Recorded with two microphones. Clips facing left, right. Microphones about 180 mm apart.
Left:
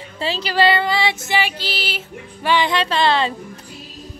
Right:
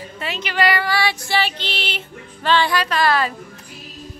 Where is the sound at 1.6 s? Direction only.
5° left (ahead or behind); by 3.3 s 25° left (ahead or behind).